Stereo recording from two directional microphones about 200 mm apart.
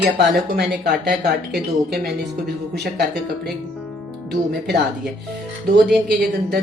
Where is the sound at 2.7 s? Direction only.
55° right (ahead or behind).